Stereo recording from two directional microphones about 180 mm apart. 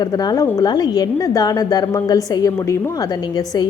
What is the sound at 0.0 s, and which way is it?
Speech, 20° left (ahead or behind).